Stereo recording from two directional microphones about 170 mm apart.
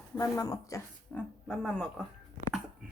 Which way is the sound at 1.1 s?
5° left (ahead or behind).